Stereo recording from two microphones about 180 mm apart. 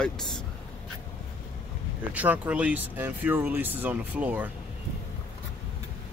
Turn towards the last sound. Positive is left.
turn(degrees=-10)  # may be behind; listen again after turning